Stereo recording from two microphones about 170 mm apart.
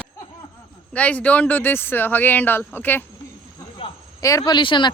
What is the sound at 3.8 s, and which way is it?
Cricket, 35° left (ahead or behind).